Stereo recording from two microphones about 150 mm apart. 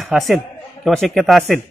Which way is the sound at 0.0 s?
Centre (ahead or behind).